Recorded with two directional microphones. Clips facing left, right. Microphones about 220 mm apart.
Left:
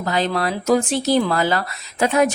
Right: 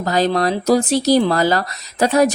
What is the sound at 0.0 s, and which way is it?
Speech, 40° right (ahead or behind).